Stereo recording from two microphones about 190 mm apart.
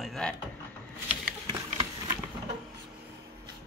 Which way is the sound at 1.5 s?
20° right (ahead or behind).